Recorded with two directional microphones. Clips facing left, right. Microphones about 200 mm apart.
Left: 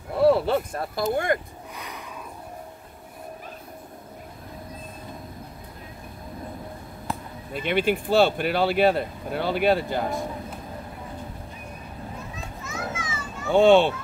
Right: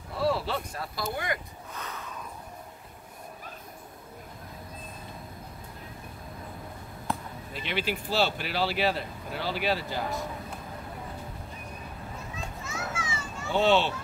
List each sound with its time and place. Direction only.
0.1 s a sound: 55° left (ahead or behind)
1.1 s speech: 50° left (ahead or behind)
1.8 s a sound: 15° left (ahead or behind)
7.5 s speech: 50° left (ahead or behind)
12.9 s children playing: 30° right (ahead or behind)
13.5 s speech: 50° left (ahead or behind)